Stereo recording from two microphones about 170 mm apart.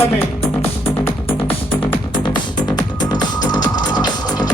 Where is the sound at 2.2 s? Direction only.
25° left (ahead or behind).